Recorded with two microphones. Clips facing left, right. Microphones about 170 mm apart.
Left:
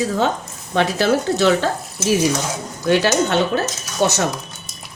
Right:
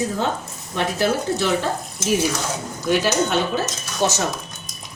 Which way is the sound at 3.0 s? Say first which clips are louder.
Left 3 dB; 70° left (ahead or behind).